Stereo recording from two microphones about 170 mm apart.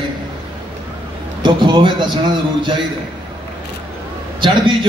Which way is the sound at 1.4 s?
30° right (ahead or behind).